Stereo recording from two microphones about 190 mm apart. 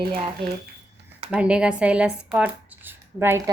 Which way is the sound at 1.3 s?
5° right (ahead or behind).